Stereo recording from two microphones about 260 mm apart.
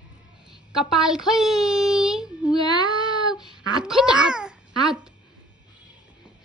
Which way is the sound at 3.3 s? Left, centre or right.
Centre.